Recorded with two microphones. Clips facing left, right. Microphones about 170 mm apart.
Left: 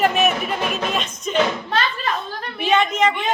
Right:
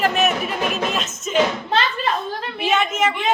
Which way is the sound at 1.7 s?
25° right (ahead or behind).